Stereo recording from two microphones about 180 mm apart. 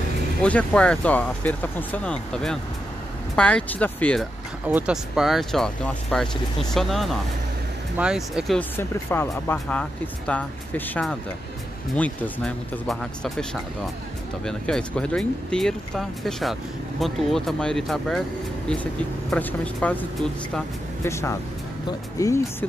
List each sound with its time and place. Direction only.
0.4 s speech: 5° left (ahead or behind)
4.6 s speech: 5° right (ahead or behind)
8.5 s speech: 10° left (ahead or behind)
19.3 s speech: 10° left (ahead or behind)